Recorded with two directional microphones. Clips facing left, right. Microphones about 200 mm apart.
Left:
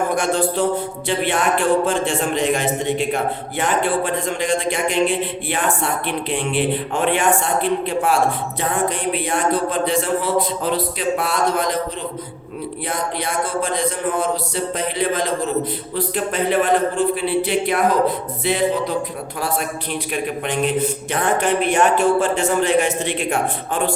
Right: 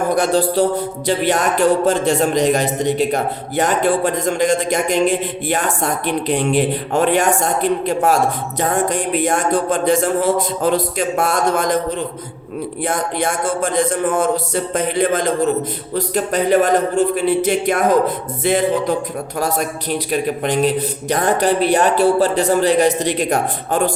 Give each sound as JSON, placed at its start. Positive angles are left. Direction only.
{"t": 0.2, "sound": "music", "side_deg": -35}
{"t": 8.7, "sound": "speech", "side_deg": -45}
{"t": 12.8, "sound": "speech", "side_deg": -50}
{"t": 19.4, "sound": "music", "side_deg": -40}